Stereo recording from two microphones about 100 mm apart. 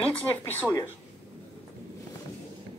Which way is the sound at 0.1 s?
20° left (ahead or behind).